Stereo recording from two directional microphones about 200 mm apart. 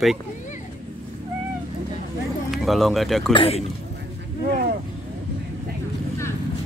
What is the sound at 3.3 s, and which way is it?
Speech, 30° left (ahead or behind).